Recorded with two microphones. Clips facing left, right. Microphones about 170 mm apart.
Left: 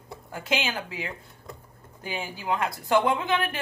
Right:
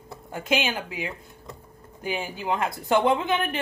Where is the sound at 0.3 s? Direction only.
20° right (ahead or behind).